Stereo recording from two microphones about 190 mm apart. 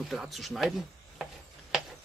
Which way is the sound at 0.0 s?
Centre (ahead or behind).